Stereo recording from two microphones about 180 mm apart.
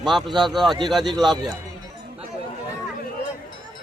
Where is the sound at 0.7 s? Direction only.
25° right (ahead or behind).